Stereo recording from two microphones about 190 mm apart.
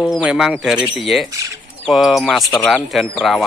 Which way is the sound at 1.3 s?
15° right (ahead or behind).